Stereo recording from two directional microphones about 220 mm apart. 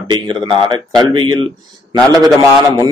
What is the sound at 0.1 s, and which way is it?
Speech, 20° right (ahead or behind).